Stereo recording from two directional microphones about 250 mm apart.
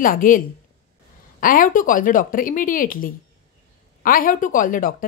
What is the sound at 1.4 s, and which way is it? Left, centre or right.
Speech, left.